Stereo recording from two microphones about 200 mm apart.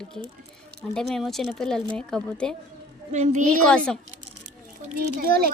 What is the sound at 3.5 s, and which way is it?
Speech, 5° left (ahead or behind).